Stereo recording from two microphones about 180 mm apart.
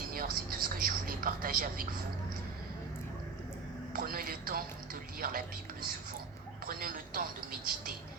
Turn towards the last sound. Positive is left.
turn(degrees=-50)  # may be behind; listen again after turning